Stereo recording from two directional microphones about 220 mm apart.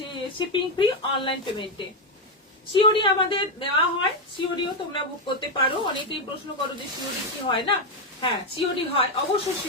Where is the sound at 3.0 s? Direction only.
20° left (ahead or behind).